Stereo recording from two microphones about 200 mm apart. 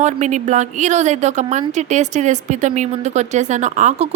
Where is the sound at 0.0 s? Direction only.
35° right (ahead or behind).